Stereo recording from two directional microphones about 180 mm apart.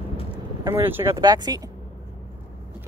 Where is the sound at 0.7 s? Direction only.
15° right (ahead or behind).